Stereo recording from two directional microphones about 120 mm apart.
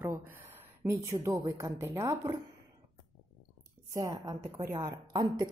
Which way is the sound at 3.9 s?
30° right (ahead or behind).